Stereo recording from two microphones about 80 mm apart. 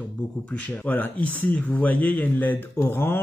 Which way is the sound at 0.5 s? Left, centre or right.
Centre.